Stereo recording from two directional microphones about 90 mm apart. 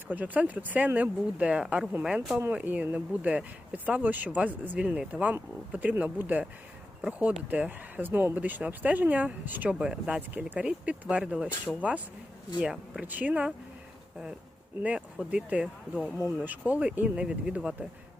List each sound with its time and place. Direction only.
0.1 s speech: 20° right (ahead or behind)
14.8 s speech: 15° right (ahead or behind)